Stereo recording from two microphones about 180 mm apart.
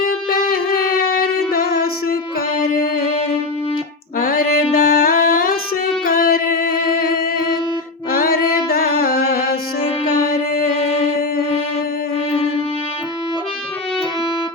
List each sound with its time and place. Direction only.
1.1 s music: 55° left (ahead or behind)
4.2 s a sound: 55° left (ahead or behind)
6.1 s music: 50° left (ahead or behind)